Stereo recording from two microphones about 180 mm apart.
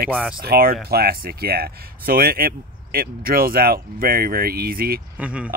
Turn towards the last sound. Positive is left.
turn(degrees=-5)  # may be behind; listen again after turning